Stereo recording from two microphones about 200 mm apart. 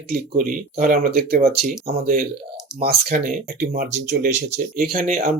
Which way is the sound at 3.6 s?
55° right (ahead or behind).